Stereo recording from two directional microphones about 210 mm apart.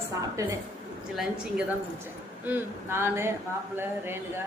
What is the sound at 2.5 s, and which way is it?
A woman's voice, 10° right (ahead or behind).